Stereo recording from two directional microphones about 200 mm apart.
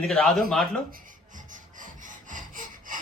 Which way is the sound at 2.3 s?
40° right (ahead or behind).